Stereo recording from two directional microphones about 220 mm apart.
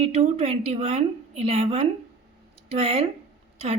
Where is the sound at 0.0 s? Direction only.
30° right (ahead or behind).